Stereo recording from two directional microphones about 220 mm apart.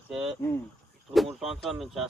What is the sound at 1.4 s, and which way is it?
Speech, centre (ahead or behind).